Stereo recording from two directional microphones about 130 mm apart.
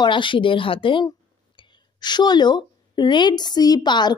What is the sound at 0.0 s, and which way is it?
A woman's voice, 40° left (ahead or behind).